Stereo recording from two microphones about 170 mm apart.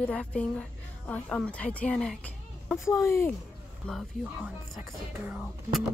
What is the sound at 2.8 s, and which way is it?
Speech, 15° left (ahead or behind).